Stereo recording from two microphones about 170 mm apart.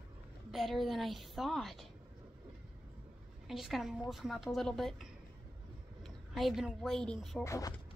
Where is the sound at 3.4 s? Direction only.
Centre (ahead or behind).